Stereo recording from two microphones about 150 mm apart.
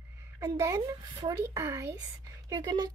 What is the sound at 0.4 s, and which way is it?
Speech, 20° right (ahead or behind).